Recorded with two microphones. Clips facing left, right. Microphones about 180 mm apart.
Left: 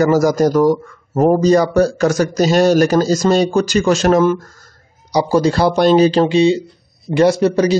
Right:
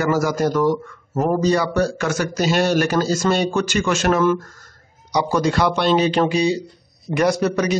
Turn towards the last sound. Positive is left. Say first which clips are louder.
# left 6 dB
turn(degrees=30)  # may be behind; listen again after turning